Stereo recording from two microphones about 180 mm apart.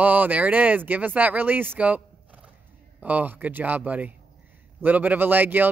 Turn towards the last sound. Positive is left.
turn(degrees=-10)  # may be behind; listen again after turning